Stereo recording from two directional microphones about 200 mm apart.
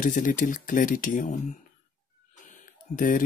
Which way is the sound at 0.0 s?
40° left (ahead or behind).